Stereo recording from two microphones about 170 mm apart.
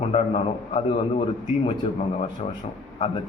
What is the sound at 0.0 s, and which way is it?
Speech, 35° left (ahead or behind).